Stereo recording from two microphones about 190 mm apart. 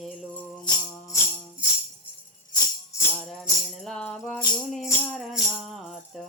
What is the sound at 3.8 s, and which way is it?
Music, 5° left (ahead or behind).